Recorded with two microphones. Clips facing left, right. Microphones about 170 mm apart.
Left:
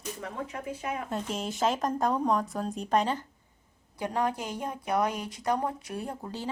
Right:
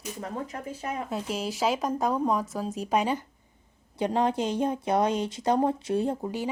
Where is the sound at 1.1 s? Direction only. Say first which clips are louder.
Right 2 dB; centre (ahead or behind).